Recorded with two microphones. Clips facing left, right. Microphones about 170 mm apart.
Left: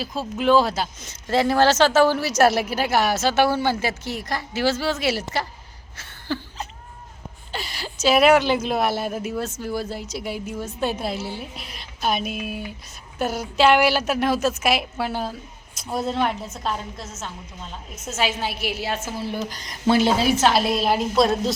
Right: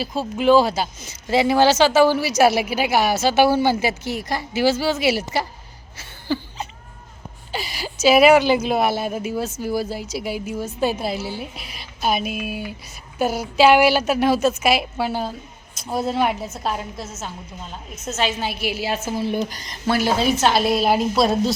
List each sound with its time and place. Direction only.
0.0 s speech: centre (ahead or behind)
6.0 s a sound: centre (ahead or behind)
7.5 s speech: 5° right (ahead or behind)
18.0 s speech: 5° left (ahead or behind); by 19.4 s 10° right (ahead or behind)
19.9 s a woman's voice: 25° left (ahead or behind)
20.1 s speech: 5° left (ahead or behind)